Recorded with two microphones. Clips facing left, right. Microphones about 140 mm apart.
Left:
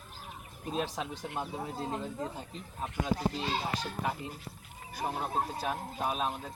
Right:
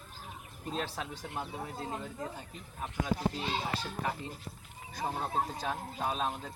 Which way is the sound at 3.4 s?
15° left (ahead or behind).